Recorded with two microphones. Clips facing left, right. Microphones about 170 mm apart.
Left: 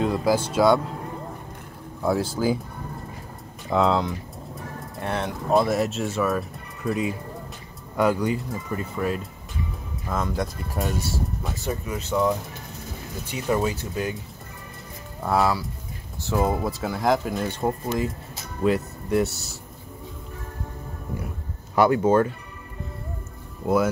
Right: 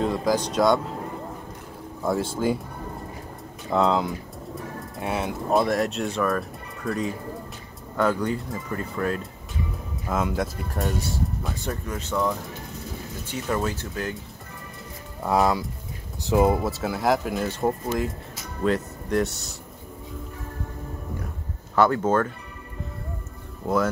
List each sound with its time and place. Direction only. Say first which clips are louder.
0.0 s speech: left 1 dB; 5° left (ahead or behind)
2.0 s speech: left 1 dB; centre (ahead or behind)
3.7 s speech: even; centre (ahead or behind)
10.0 s speech: right 1 dB; 5° right (ahead or behind)
13.3 s speech: left 3 dB; 10° left (ahead or behind)
15.2 s speech: right 1 dB; 15° right (ahead or behind)
16.6 s speech: even; 5° right (ahead or behind)
21.7 s speech: left 2 dB; 10° left (ahead or behind)